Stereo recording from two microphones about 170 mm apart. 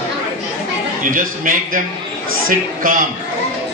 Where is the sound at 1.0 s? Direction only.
50° right (ahead or behind).